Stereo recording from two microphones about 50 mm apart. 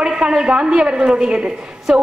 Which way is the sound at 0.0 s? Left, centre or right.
Centre.